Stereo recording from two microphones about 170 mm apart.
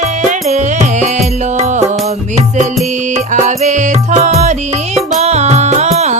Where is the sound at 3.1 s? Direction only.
45° right (ahead or behind).